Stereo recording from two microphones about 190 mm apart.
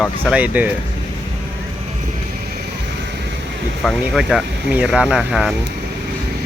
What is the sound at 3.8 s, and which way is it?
Speech, centre (ahead or behind).